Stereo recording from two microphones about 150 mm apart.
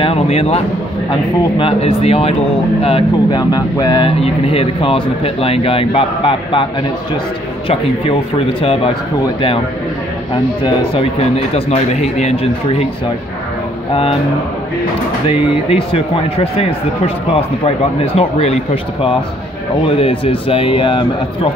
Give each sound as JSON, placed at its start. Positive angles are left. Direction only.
{"t": 0.0, "sound": "speech", "side_deg": 40}
{"t": 1.6, "sound": "speech", "side_deg": 40}
{"t": 4.2, "sound": "speech", "side_deg": 40}
{"t": 10.6, "sound": "speech", "side_deg": 40}
{"t": 15.2, "sound": "speech", "side_deg": 40}